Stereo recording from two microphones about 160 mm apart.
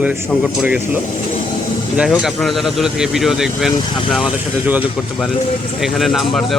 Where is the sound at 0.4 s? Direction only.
5° right (ahead or behind).